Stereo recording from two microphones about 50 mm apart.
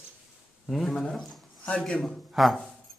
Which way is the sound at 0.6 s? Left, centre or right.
Centre.